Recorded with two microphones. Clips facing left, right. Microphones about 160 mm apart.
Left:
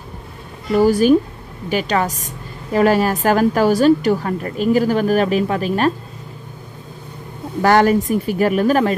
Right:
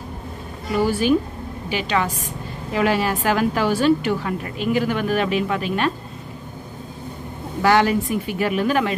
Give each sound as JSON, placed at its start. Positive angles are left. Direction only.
{"t": 0.7, "sound": "a woman's voice", "side_deg": 40}
{"t": 7.6, "sound": "speech", "side_deg": 45}